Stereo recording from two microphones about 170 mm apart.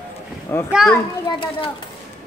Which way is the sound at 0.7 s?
Centre (ahead or behind).